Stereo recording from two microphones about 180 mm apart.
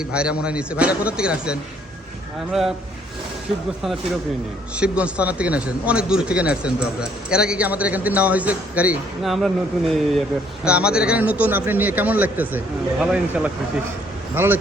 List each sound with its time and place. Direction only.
0.0 s a man's voice: 5° right (ahead or behind)
4.8 s a man's voice: 5° right (ahead or behind)